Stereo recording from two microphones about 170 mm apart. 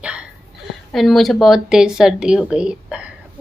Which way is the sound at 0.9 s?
Centre (ahead or behind).